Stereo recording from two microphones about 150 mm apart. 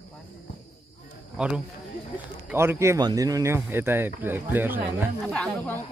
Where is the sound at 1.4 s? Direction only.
5° right (ahead or behind).